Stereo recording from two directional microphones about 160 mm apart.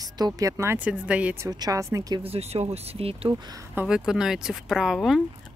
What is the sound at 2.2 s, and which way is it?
Speech, 40° right (ahead or behind).